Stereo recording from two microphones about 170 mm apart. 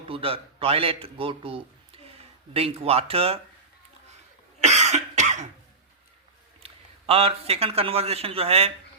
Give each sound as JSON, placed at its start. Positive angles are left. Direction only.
{"t": 0.1, "sound": "a man's voice", "side_deg": -35}
{"t": 4.6, "sound": "cough", "side_deg": -40}
{"t": 7.1, "sound": "a man's voice", "side_deg": -35}